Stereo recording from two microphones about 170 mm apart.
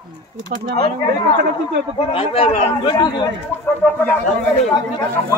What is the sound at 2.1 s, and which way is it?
Speech, 35° left (ahead or behind).